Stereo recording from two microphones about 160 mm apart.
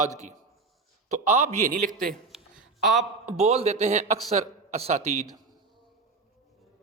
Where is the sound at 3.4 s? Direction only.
40° right (ahead or behind).